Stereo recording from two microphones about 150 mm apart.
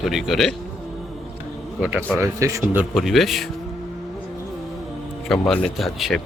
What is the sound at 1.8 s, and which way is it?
Speech, 10° right (ahead or behind).